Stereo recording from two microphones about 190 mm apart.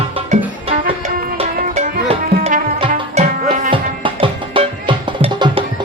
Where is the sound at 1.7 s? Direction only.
40° right (ahead or behind).